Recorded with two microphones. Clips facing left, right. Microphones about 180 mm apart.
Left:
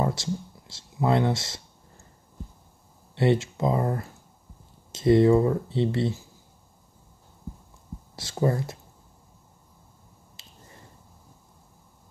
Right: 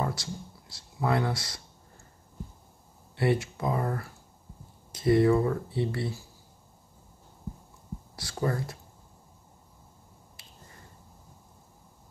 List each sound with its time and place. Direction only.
0.0 s speech: 25° left (ahead or behind)
3.2 s speech: 25° left (ahead or behind)
8.2 s speech: 25° left (ahead or behind)
10.4 s finger snapping: 25° left (ahead or behind)